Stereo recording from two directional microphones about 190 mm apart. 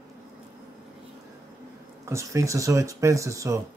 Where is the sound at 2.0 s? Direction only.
15° right (ahead or behind).